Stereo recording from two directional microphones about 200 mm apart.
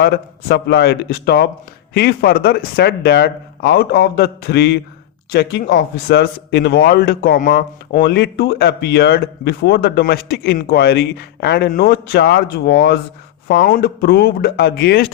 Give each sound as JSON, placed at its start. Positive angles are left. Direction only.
{"t": 0.0, "sound": "speech", "side_deg": 55}